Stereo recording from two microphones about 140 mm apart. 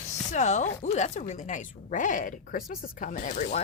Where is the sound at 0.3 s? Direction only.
55° left (ahead or behind).